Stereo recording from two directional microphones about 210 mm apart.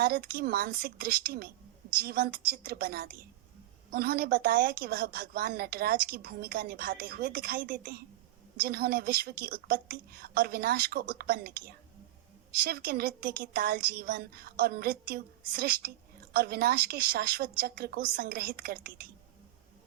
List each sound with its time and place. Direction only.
0.0 s a woman's voice: 45° right (ahead or behind)